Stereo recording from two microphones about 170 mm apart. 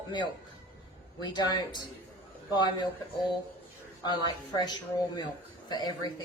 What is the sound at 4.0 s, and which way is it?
Speech, 25° left (ahead or behind).